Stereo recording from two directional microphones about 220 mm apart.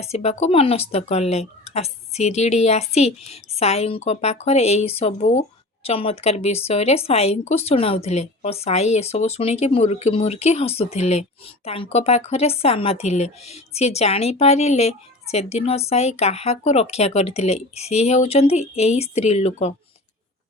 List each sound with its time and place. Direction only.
0.0 s speech: 30° left (ahead or behind)